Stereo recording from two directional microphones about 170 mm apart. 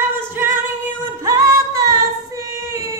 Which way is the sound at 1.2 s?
20° right (ahead or behind).